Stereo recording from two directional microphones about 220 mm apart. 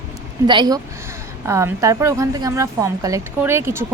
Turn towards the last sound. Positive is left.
turn(degrees=-10)  # may be behind; listen again after turning